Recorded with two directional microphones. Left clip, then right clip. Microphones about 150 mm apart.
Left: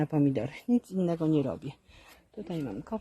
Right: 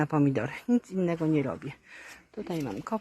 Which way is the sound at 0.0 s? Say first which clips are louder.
Right 2 dB; 15° left (ahead or behind).